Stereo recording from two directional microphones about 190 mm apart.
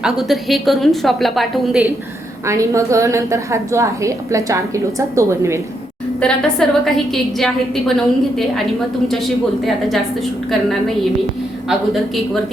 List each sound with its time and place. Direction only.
0.0 s a woman's voice: centre (ahead or behind)
2.5 s a woman's voice: 15° right (ahead or behind)
6.1 s a woman's voice: 5° left (ahead or behind)
9.0 s a woman's voice: centre (ahead or behind)
11.7 s a woman's voice: centre (ahead or behind)